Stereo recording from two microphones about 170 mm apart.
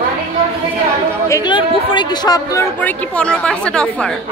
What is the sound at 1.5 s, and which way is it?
Speech, 25° left (ahead or behind).